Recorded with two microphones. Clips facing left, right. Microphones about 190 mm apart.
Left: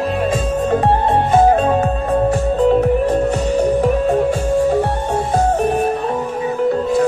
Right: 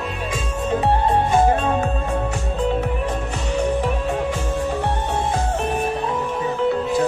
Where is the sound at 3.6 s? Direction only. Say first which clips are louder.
Left 5 dB; 45° left (ahead or behind).